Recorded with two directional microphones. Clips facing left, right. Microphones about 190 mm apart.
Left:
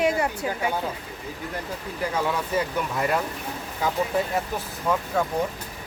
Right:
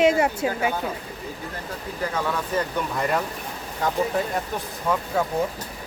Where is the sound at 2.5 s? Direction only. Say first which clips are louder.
Even; 5° left (ahead or behind).